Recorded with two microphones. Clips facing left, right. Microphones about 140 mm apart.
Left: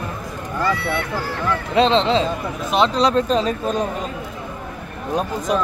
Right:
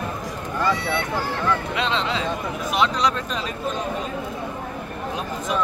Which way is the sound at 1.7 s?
30° left (ahead or behind).